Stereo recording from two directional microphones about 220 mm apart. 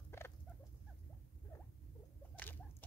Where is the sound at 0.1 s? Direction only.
10° left (ahead or behind).